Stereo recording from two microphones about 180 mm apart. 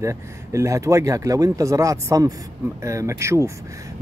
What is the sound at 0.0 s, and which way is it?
Speech, 15° right (ahead or behind).